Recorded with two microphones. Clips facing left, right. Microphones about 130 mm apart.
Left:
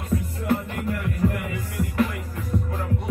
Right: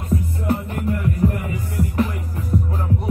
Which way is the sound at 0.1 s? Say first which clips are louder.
Right 2 dB; 30° right (ahead or behind).